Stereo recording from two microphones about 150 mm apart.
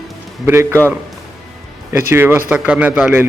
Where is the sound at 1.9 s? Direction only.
15° right (ahead or behind).